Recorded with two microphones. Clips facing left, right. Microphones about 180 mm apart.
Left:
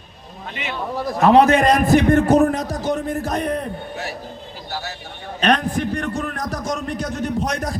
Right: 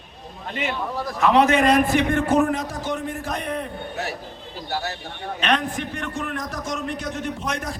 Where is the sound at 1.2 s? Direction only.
40° left (ahead or behind).